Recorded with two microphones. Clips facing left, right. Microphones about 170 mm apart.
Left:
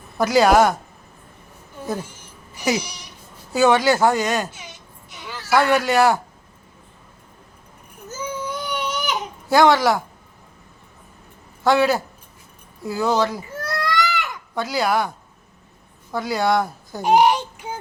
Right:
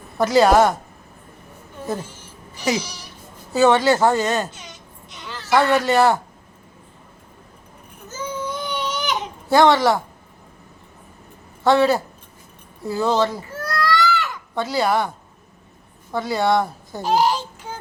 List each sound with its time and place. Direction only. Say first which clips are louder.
0.2 s speech: right 1 dB; centre (ahead or behind)
2.6 s a sound: even; 10° left (ahead or behind)
8.4 s baby cry: right 1 dB; 10° left (ahead or behind)
11.6 s speech: right 1 dB; centre (ahead or behind)
13.7 s baby cry: right 3 dB; 20° left (ahead or behind)
14.5 s speech: right 1 dB; centre (ahead or behind)
16.1 s speech: right 1 dB; centre (ahead or behind)
17.0 s a child's voice: left 3 dB; 15° left (ahead or behind)